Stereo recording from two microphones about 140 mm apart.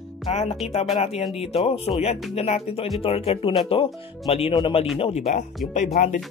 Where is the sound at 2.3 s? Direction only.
50° left (ahead or behind).